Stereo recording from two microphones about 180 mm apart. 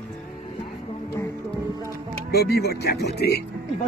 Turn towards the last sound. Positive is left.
turn(degrees=65)  # may be behind; listen again after turning